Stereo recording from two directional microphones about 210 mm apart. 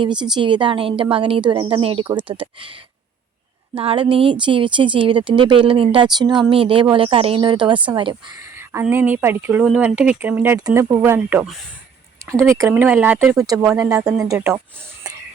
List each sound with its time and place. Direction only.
0.0 s speech: 20° right (ahead or behind)
3.8 s speech: 25° right (ahead or behind)
8.5 s speech: 10° right (ahead or behind)